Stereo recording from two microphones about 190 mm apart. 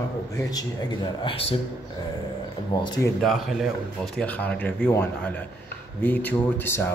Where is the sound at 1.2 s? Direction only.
30° left (ahead or behind).